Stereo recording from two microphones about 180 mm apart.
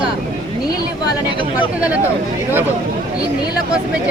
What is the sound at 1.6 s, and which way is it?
Speech, 10° right (ahead or behind).